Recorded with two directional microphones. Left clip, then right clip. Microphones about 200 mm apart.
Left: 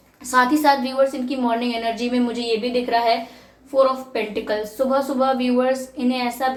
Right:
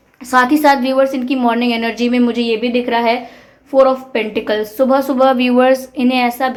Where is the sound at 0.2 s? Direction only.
50° right (ahead or behind).